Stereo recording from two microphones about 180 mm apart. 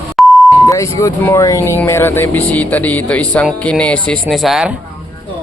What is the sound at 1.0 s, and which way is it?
Speech, 20° left (ahead or behind).